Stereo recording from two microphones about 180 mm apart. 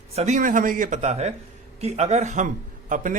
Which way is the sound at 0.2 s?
40° right (ahead or behind).